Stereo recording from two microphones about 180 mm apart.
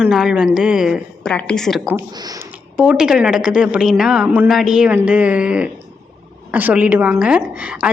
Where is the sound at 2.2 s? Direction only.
20° right (ahead or behind).